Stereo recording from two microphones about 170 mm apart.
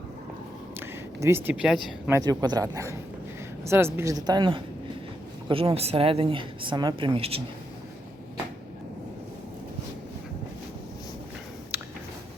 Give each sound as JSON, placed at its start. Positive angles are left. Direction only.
{"t": 0.8, "sound": "speech", "side_deg": -15}
{"t": 2.1, "sound": "a woman's voice", "side_deg": -20}
{"t": 11.7, "sound": "a sound", "side_deg": -10}